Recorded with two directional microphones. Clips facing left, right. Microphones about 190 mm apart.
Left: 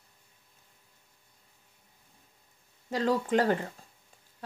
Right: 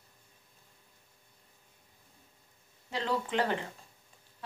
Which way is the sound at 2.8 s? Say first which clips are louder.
Left 5 dB; 45° left (ahead or behind).